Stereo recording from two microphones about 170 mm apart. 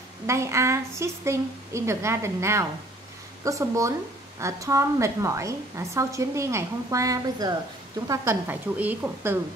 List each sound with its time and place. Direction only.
0.3 s a woman's voice: 15° right (ahead or behind)